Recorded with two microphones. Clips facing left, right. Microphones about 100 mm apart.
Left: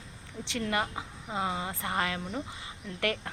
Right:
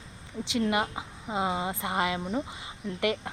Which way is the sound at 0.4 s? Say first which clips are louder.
Right 4 dB; 15° right (ahead or behind).